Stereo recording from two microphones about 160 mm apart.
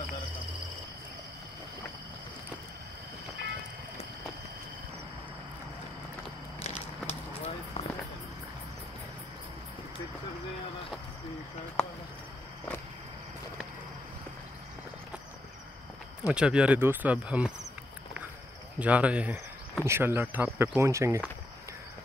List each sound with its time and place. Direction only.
6.6 s walk: 40° left (ahead or behind)
16.3 s speech: 5° right (ahead or behind)
18.8 s speech: 10° right (ahead or behind)